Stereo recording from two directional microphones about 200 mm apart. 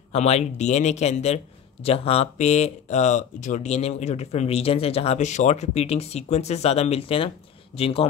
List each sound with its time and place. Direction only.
0.1 s a man's voice: 35° left (ahead or behind)